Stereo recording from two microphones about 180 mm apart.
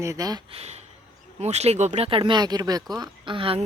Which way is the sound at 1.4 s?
35° right (ahead or behind).